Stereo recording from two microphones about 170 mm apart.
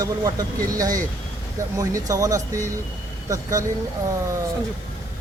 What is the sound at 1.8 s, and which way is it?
Speech, 20° right (ahead or behind).